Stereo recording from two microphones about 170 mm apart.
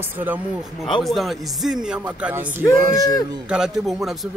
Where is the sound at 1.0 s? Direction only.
Centre (ahead or behind).